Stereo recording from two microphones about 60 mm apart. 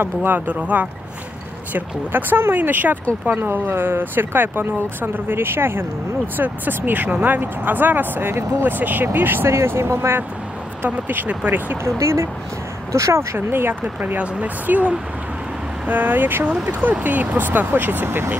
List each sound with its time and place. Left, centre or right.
0.0 s speech: right
9.5 s speech: right
11.8 s speech: right
13.5 s speech: right
14.1 s speech: right